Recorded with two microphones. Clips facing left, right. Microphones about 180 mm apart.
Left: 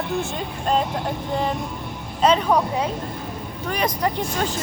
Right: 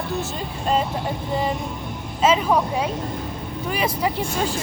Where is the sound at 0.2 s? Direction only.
Centre (ahead or behind).